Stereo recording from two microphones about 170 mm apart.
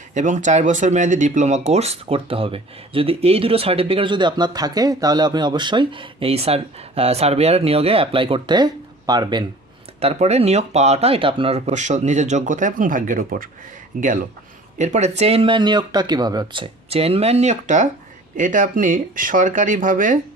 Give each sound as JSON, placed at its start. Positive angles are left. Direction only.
{"t": 0.1, "sound": "speech", "side_deg": -45}
{"t": 10.0, "sound": "speech", "side_deg": -40}